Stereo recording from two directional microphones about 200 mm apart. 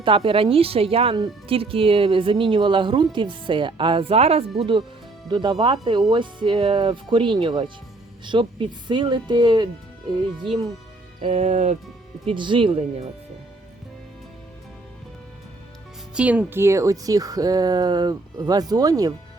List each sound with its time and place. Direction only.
0.0 s speech: 25° right (ahead or behind)
11.2 s music: 35° right (ahead or behind)
12.2 s speech: 25° right (ahead or behind)
16.1 s speech: 5° right (ahead or behind)